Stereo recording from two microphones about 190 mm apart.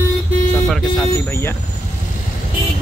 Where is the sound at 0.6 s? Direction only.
Centre (ahead or behind).